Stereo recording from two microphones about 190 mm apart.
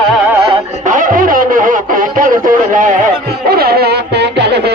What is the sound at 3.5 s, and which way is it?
Music, 55° right (ahead or behind).